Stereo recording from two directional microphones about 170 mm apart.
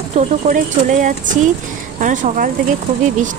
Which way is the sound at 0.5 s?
50° right (ahead or behind).